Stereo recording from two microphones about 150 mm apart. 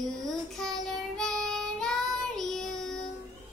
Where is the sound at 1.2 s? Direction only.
5° left (ahead or behind).